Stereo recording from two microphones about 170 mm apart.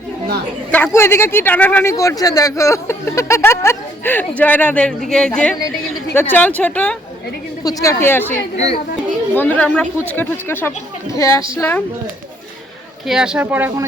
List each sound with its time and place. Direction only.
0.7 s a woman's voice: 15° left (ahead or behind)
7.6 s speech: 20° left (ahead or behind)
8.5 s a child's voice: 40° left (ahead or behind)
9.3 s speech: 10° left (ahead or behind)
13.1 s speech: 5° right (ahead or behind)